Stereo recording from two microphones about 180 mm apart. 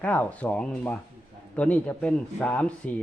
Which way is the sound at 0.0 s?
10° left (ahead or behind).